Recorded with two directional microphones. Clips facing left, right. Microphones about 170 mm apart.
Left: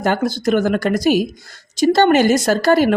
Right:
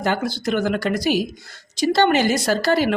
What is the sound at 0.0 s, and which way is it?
Speech, 45° left (ahead or behind).